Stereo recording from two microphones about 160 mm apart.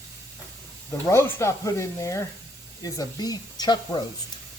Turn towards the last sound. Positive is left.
turn(degrees=25)  # may be behind; listen again after turning